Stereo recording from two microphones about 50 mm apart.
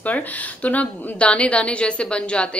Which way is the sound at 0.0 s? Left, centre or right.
Left.